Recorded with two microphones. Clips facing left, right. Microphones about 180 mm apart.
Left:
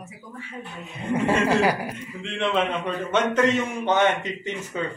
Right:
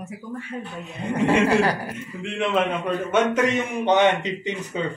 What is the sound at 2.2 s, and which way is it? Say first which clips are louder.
A man's voice: right 2 dB; 5° right (ahead or behind).